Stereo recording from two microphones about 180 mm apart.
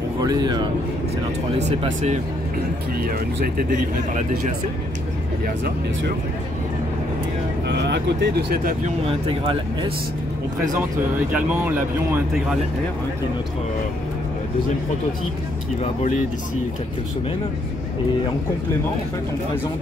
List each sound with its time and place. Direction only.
0.2 s speech: 20° right (ahead or behind)
1.6 s speech: 40° right (ahead or behind)
7.6 s speech: 75° right (ahead or behind)
8.8 s speech: 30° right (ahead or behind)
10.8 s speech: 10° right (ahead or behind)